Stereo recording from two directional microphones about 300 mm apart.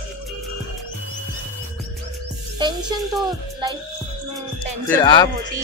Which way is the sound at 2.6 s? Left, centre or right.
Centre.